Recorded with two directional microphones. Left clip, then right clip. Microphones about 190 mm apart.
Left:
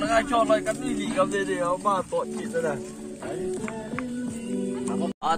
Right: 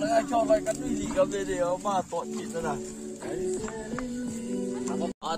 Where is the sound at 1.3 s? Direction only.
65° right (ahead or behind).